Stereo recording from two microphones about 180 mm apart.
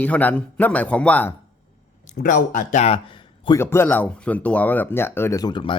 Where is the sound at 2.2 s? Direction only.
45° left (ahead or behind).